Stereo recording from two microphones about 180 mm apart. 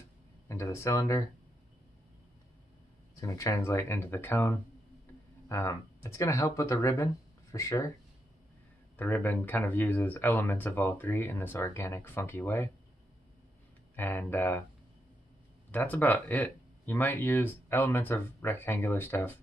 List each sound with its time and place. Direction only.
0.5 s speech: 15° left (ahead or behind)
3.2 s speech: 15° left (ahead or behind)
8.9 s speech: 10° left (ahead or behind)
13.9 s speech: 10° left (ahead or behind)
15.7 s speech: 10° left (ahead or behind)